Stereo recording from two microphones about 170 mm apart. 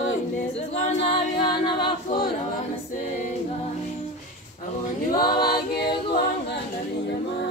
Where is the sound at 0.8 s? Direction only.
45° left (ahead or behind).